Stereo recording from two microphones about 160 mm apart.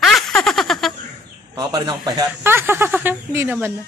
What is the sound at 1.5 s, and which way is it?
Speech, 25° right (ahead or behind).